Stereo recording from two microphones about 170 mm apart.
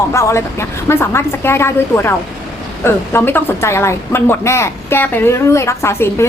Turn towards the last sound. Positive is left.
turn(degrees=15)  # may be behind; listen again after turning